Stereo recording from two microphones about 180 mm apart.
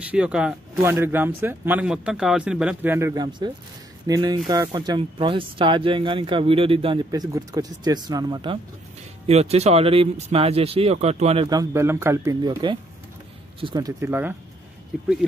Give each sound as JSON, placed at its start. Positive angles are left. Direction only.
{"t": 0.1, "sound": "speech", "side_deg": -5}
{"t": 9.3, "sound": "speech", "side_deg": -35}
{"t": 11.4, "sound": "speech", "side_deg": -20}